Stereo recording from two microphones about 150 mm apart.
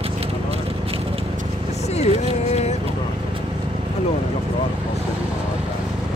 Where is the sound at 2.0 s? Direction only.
45° left (ahead or behind).